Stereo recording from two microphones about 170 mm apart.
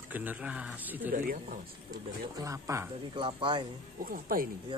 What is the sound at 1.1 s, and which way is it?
Speech, 50° right (ahead or behind).